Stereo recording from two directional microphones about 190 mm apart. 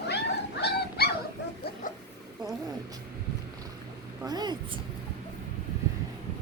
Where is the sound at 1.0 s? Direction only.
55° left (ahead or behind).